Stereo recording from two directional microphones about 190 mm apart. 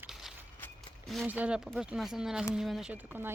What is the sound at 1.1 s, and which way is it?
Speech, 5° right (ahead or behind).